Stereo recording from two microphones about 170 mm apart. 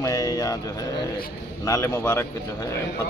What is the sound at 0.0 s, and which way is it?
Music, 20° left (ahead or behind).